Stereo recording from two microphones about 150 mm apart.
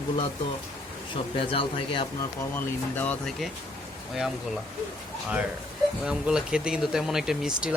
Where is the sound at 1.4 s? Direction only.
35° left (ahead or behind).